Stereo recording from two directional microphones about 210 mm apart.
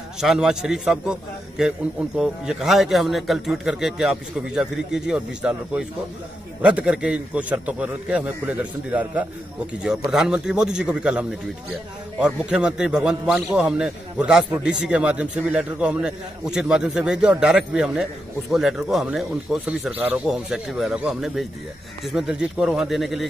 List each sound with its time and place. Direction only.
0.2 s a man's voice: centre (ahead or behind)